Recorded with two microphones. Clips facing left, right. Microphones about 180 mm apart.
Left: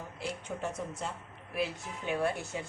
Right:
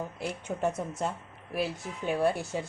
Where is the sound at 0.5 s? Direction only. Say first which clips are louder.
Right 7 dB; 45° right (ahead or behind).